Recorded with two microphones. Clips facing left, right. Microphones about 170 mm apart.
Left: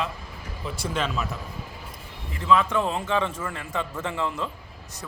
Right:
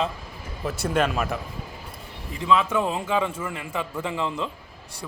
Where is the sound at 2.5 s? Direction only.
10° right (ahead or behind).